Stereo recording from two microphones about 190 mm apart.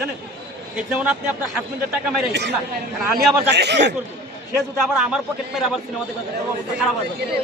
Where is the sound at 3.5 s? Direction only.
65° right (ahead or behind).